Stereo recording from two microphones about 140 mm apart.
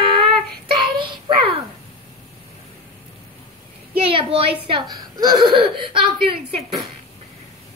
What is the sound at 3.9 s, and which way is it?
Speech, 40° right (ahead or behind).